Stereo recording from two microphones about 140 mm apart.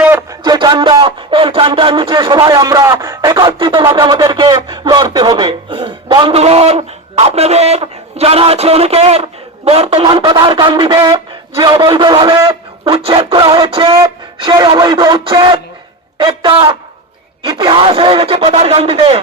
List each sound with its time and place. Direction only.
0.0 s music: 15° right (ahead or behind)
0.4 s speech: 30° right (ahead or behind)
6.3 s a man's voice: 45° right (ahead or behind); by 12.5 s 25° right (ahead or behind)
12.8 s speech: 40° right (ahead or behind)